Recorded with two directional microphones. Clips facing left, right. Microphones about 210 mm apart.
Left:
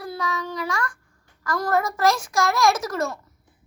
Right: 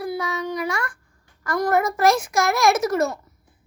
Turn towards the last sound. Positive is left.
turn(degrees=-25)  # may be behind; listen again after turning